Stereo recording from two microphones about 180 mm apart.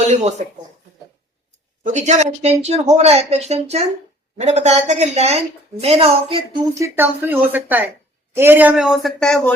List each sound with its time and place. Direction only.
0.1 s speech: 40° right (ahead or behind)
1.8 s speech: 40° right (ahead or behind)
6.7 s speech: 15° right (ahead or behind); by 9.6 s 5° left (ahead or behind)